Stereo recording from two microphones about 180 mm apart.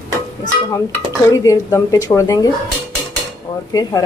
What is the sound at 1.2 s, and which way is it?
Speech, 20° left (ahead or behind).